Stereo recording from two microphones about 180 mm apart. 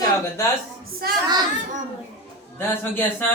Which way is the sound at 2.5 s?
10° left (ahead or behind).